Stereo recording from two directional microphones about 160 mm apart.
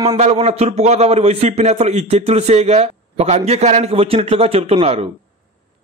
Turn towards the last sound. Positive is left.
turn(degrees=-40)  # may be behind; listen again after turning